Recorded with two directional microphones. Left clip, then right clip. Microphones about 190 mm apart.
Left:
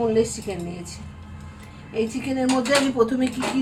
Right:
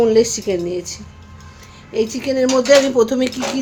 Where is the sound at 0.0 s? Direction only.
65° right (ahead or behind).